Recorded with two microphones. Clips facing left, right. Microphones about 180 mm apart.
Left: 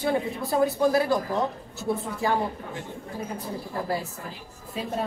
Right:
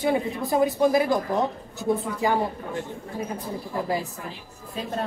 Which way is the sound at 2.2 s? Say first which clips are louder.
Right 2 dB; 15° right (ahead or behind).